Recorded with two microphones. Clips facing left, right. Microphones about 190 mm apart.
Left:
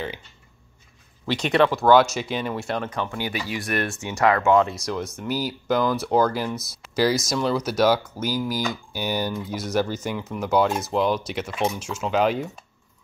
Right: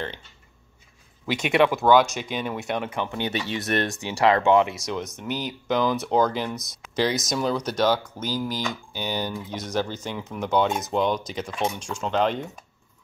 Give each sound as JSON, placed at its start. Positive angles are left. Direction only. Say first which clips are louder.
{"t": 1.2, "sound": "speech", "louder": "left 1 dB", "side_deg": -15}
{"t": 3.9, "sound": "speech", "louder": "even", "side_deg": -35}
{"t": 4.6, "sound": "speech", "louder": "left 2 dB", "side_deg": 0}